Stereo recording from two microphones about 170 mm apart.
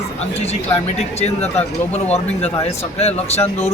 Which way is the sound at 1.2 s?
40° left (ahead or behind).